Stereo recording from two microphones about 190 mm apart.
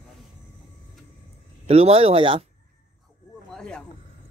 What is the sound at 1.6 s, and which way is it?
Speech, 30° right (ahead or behind).